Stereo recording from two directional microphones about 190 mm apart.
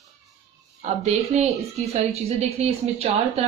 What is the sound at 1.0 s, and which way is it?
A woman's voice, 35° right (ahead or behind).